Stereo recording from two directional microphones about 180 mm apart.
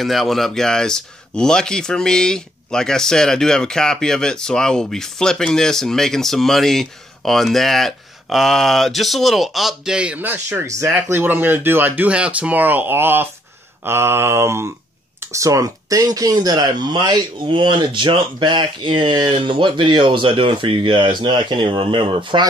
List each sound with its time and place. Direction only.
0.0 s speech: centre (ahead or behind)
13.8 s mantra: 15° right (ahead or behind)
15.1 s speech: 15° right (ahead or behind)